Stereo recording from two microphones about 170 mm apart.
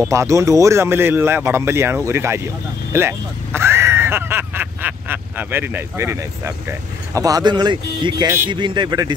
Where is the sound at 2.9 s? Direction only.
15° right (ahead or behind).